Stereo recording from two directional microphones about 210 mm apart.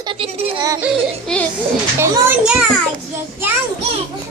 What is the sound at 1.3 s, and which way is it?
Speech, 5° left (ahead or behind).